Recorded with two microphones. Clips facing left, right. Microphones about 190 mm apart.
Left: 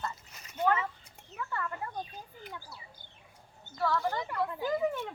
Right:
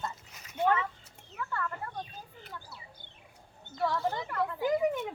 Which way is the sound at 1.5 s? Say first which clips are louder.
Right 1 dB; 10° left (ahead or behind).